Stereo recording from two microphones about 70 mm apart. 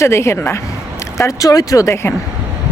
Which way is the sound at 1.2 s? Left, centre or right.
Left.